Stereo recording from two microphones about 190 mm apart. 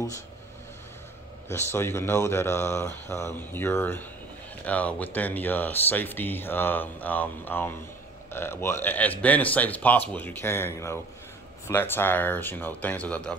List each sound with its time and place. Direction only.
1.5 s speech: 10° left (ahead or behind)